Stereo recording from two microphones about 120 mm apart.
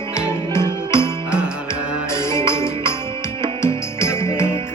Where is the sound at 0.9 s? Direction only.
20° left (ahead or behind).